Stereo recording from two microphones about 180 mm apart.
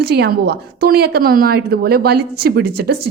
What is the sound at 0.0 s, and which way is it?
A woman's voice, 65° right (ahead or behind).